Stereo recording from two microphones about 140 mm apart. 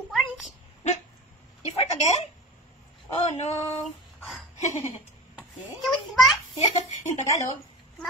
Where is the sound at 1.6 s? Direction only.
50° left (ahead or behind).